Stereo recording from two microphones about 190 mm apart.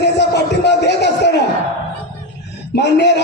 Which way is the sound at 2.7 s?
60° left (ahead or behind).